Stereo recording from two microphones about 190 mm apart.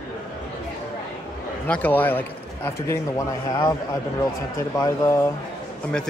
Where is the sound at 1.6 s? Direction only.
5° left (ahead or behind).